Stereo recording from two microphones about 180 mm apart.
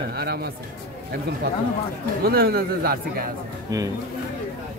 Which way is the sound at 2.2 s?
60° right (ahead or behind).